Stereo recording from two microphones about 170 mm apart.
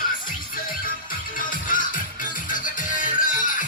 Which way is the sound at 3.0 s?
50° left (ahead or behind).